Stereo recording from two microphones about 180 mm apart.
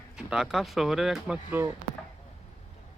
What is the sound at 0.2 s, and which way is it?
Speech, 5° right (ahead or behind).